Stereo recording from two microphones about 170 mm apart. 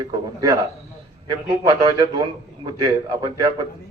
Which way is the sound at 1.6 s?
20° right (ahead or behind).